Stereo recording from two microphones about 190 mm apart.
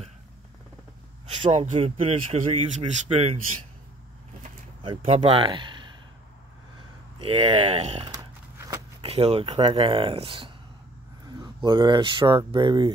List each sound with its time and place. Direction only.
1.3 s speech: 35° right (ahead or behind)
4.8 s speech: 30° right (ahead or behind)
7.2 s speech: 30° right (ahead or behind)